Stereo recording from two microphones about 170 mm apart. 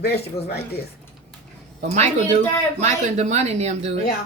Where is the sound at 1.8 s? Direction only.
40° right (ahead or behind).